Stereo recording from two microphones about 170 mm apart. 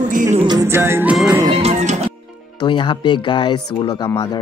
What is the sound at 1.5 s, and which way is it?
Music, 40° right (ahead or behind).